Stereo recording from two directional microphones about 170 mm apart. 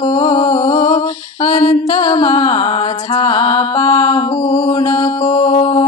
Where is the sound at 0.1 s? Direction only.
45° left (ahead or behind).